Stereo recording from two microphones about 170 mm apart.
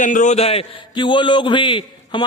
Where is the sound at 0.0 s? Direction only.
45° left (ahead or behind).